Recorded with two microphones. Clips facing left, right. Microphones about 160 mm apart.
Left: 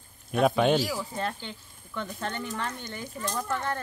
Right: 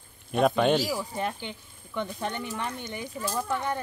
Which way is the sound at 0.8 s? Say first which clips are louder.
Right 1 dB; 15° right (ahead or behind).